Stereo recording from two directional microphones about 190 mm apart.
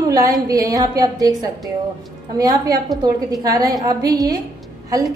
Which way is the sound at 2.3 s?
20° right (ahead or behind).